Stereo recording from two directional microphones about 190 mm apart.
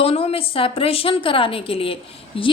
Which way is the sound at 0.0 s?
30° left (ahead or behind).